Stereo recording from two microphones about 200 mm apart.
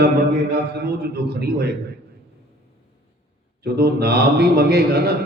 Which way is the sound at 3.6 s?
55° right (ahead or behind).